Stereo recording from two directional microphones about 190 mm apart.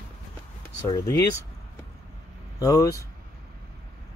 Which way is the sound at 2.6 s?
20° left (ahead or behind).